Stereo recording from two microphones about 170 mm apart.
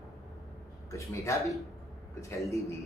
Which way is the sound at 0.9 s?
15° left (ahead or behind).